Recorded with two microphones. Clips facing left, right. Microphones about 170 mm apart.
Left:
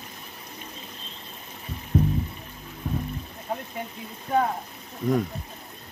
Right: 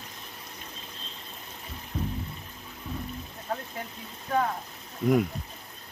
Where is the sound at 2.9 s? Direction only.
55° left (ahead or behind).